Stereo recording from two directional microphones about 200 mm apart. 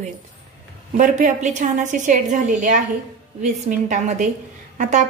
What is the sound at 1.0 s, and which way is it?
A woman's voice, 40° right (ahead or behind).